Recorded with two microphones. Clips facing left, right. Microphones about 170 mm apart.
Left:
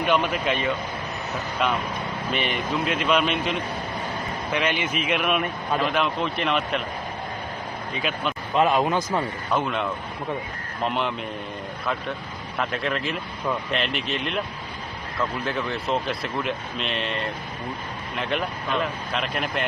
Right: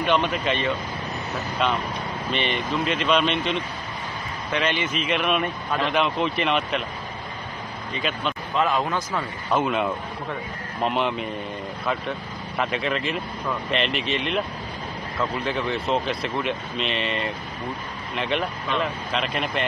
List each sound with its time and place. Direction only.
0.0 s a man's voice: 10° left (ahead or behind)
7.9 s speech: 5° left (ahead or behind)
8.5 s speech: 20° left (ahead or behind)
9.5 s speech: 5° right (ahead or behind)
15.4 s speech: centre (ahead or behind)